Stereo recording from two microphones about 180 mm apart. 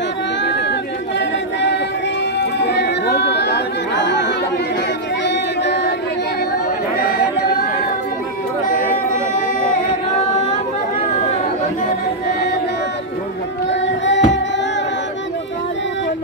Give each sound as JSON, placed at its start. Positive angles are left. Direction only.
{"t": 2.6, "sound": "chatter", "side_deg": 70}
{"t": 5.2, "sound": "a sound", "side_deg": 75}
{"t": 13.7, "sound": "child singing", "side_deg": 85}